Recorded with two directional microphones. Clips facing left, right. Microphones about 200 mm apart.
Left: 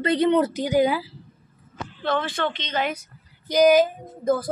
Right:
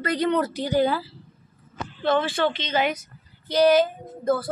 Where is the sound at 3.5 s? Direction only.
10° left (ahead or behind).